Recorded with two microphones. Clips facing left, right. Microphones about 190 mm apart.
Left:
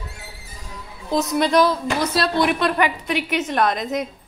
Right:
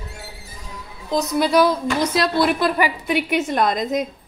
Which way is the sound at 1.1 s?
Centre (ahead or behind).